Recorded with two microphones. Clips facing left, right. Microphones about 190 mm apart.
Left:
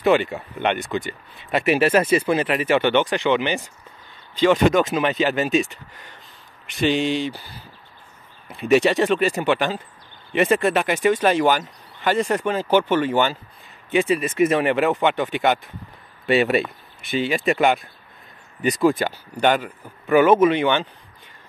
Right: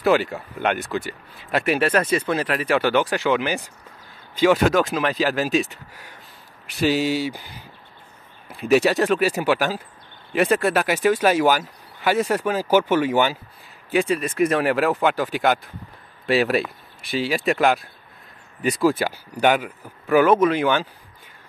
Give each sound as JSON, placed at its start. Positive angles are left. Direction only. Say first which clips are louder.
{"t": 0.0, "sound": "speech", "louder": "left 1 dB", "side_deg": 0}
{"t": 8.5, "sound": "speech", "louder": "left 1 dB", "side_deg": 0}
{"t": 13.8, "sound": "speech", "louder": "left 1 dB", "side_deg": 0}